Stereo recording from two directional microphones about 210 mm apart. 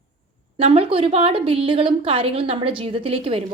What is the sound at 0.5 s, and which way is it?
A woman's voice, 25° right (ahead or behind).